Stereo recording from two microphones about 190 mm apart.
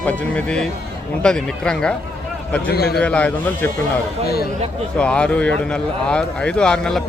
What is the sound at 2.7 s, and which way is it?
Speech, 55° left (ahead or behind).